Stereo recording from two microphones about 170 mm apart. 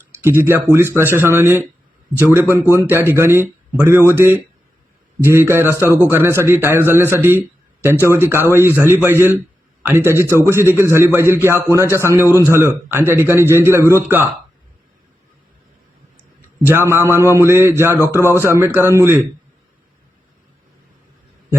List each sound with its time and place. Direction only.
0.1 s speech: 15° right (ahead or behind)
16.6 s speech: 15° right (ahead or behind)